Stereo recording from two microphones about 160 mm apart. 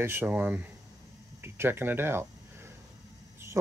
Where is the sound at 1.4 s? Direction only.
15° right (ahead or behind).